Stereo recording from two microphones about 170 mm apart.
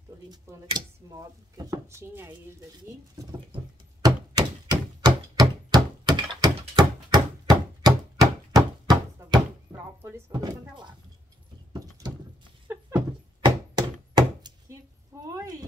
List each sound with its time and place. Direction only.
0.3 s speech: 25° right (ahead or behind)
2.8 s a sound: 25° right (ahead or behind)
6.0 s thunk: 25° right (ahead or behind)
6.7 s chopping: 25° right (ahead or behind)
10.3 s speech: 25° right (ahead or behind)
11.7 s horse: 25° right (ahead or behind)
12.9 s a sound: 25° right (ahead or behind)